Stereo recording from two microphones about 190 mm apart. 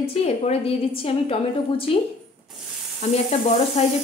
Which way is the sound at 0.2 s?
35° left (ahead or behind).